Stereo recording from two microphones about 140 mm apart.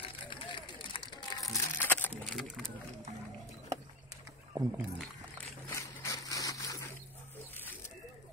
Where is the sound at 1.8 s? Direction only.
15° left (ahead or behind).